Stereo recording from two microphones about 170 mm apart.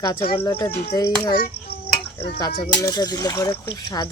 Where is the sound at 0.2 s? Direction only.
35° left (ahead or behind).